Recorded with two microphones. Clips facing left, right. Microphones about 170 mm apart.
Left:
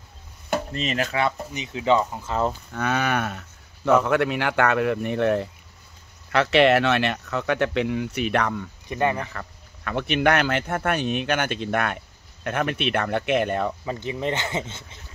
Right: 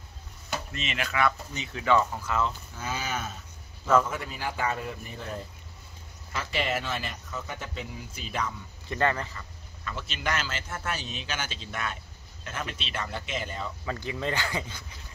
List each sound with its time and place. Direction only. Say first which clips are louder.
0.7 s speech: left 6 dB; 40° left (ahead or behind)
1.2 s speech: left 2 dB; 20° left (ahead or behind)
2.7 s cattle: left 9 dB; 65° left (ahead or behind)
4.0 s speech: left 11 dB; 75° left (ahead or behind)
8.8 s speech: left 3 dB; 15° left (ahead or behind)
9.2 s speech: left 5 dB; 65° left (ahead or behind)
13.8 s speech: left 5 dB; 20° left (ahead or behind)